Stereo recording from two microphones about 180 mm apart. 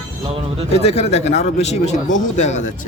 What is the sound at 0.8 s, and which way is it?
Speech, 35° left (ahead or behind).